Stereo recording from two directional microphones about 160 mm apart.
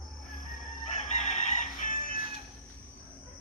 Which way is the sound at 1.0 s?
45° left (ahead or behind).